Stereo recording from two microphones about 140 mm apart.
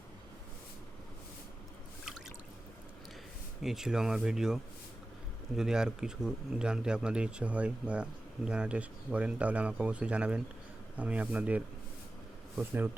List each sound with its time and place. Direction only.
3.6 s speech: 5° right (ahead or behind)